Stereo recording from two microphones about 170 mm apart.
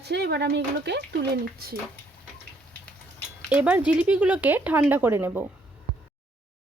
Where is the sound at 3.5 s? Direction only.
10° right (ahead or behind).